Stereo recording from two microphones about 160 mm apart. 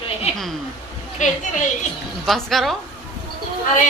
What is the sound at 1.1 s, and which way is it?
Speech, 50° left (ahead or behind).